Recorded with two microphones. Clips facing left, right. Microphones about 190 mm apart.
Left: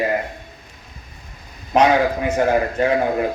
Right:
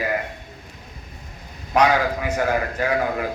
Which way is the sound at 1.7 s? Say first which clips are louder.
Left 3 dB; 25° left (ahead or behind).